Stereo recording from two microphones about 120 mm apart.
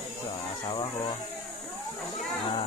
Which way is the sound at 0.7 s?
40° left (ahead or behind).